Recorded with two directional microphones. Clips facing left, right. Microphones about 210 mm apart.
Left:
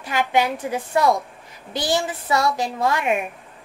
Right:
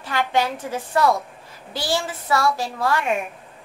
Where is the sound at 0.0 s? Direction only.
15° left (ahead or behind).